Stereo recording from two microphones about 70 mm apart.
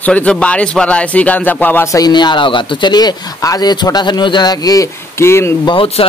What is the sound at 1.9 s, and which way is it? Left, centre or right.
Speech, left.